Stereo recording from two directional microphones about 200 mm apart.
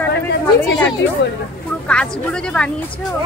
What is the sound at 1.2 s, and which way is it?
Speech, 65° left (ahead or behind).